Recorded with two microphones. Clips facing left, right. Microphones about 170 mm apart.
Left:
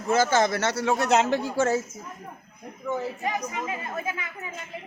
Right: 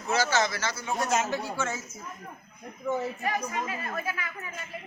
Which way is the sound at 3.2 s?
20° left (ahead or behind).